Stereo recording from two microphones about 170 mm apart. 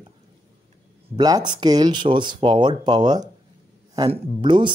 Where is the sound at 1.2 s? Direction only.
25° right (ahead or behind).